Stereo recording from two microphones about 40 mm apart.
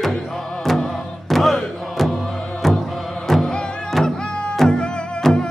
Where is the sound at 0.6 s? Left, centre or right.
Centre.